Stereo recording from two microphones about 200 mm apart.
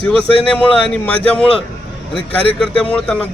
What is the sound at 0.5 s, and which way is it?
Speech, 5° left (ahead or behind).